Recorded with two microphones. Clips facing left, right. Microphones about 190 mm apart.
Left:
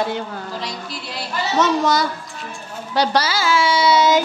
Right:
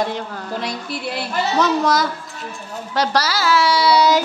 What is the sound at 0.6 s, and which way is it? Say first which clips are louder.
Music: right 3 dB; 55° right (ahead or behind).